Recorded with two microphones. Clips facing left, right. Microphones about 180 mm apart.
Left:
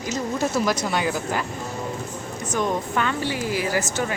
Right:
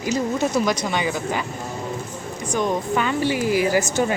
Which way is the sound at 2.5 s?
Centre (ahead or behind).